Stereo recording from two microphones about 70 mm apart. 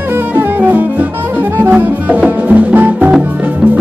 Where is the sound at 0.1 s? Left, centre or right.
Right.